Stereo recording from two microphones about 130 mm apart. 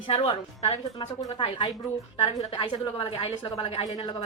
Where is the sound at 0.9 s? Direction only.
40° left (ahead or behind).